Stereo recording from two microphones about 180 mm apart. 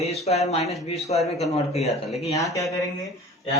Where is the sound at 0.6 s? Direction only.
Centre (ahead or behind).